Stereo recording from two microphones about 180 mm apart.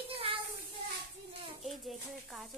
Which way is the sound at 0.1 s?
30° right (ahead or behind).